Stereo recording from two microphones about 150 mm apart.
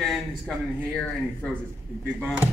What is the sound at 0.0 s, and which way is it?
A man's voice, centre (ahead or behind).